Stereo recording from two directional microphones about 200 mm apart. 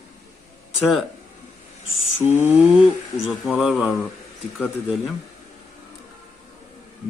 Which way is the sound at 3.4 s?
Centre (ahead or behind).